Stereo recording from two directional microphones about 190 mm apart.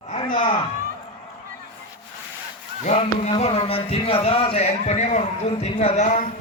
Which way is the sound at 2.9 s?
35° left (ahead or behind).